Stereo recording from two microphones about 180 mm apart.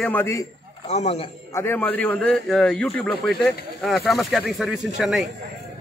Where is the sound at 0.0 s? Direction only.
10° left (ahead or behind).